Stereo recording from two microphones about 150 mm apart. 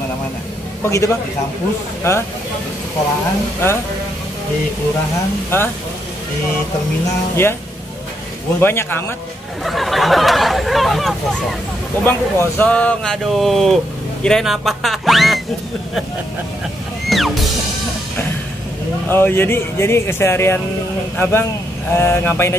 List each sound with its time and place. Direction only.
0.8 s a man's voice: 20° left (ahead or behind)
5.5 s speech: 15° left (ahead or behind)
7.4 s speech: 15° left (ahead or behind)
9.7 s a sound: centre (ahead or behind)
12.0 s speech: 10° left (ahead or behind)
17.1 s music: centre (ahead or behind)
19.0 s speech: 15° left (ahead or behind)